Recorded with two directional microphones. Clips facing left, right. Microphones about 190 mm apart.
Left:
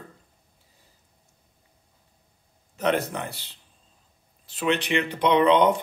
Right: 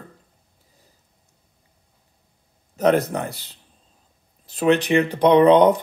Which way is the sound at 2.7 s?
40° right (ahead or behind).